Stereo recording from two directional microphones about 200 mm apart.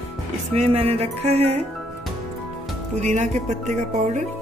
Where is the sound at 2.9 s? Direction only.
35° right (ahead or behind).